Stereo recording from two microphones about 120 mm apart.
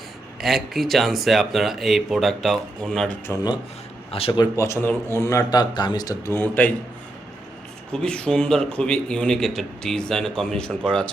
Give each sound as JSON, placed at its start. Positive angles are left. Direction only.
{"t": 0.4, "sound": "a man's voice", "side_deg": 0}
{"t": 4.1, "sound": "speech", "side_deg": 55}
{"t": 4.5, "sound": "speech", "side_deg": 25}
{"t": 6.3, "sound": "speech", "side_deg": 15}
{"t": 7.9, "sound": "a man's voice", "side_deg": 10}